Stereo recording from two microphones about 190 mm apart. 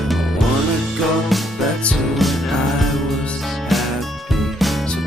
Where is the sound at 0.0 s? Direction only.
Centre (ahead or behind).